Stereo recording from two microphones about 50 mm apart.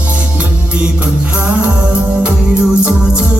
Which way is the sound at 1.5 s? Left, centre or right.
Right.